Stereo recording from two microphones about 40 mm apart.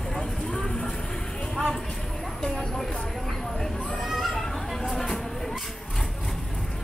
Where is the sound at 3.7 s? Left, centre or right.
Left.